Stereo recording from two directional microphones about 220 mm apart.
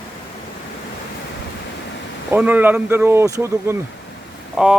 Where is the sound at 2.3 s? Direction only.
10° right (ahead or behind).